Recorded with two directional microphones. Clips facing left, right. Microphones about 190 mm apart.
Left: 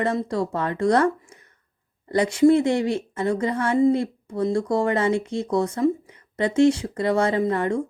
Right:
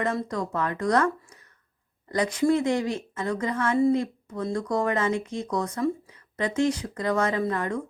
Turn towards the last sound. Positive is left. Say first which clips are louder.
# left 5 dB
turn(degrees=25)  # may be behind; listen again after turning